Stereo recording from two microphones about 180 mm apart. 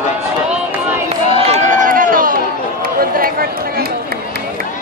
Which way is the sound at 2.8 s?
55° right (ahead or behind).